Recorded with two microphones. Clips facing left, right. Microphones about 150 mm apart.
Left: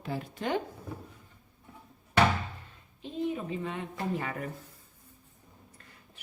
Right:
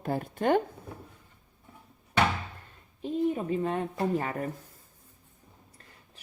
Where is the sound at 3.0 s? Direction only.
40° right (ahead or behind).